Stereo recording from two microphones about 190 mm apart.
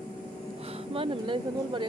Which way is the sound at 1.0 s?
25° right (ahead or behind).